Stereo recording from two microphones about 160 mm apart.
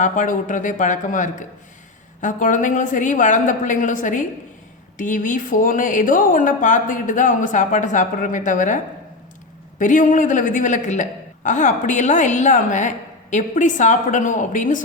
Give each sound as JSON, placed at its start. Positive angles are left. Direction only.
{"t": 0.0, "sound": "a woman's voice", "side_deg": 50}